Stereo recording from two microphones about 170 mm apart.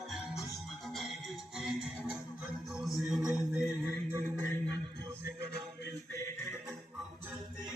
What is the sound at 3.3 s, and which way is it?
Music, 15° left (ahead or behind).